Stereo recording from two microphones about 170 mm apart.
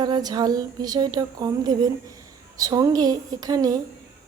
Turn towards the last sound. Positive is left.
turn(degrees=-20)  # may be behind; listen again after turning